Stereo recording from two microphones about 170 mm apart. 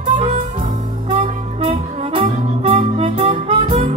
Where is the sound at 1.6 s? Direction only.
35° right (ahead or behind).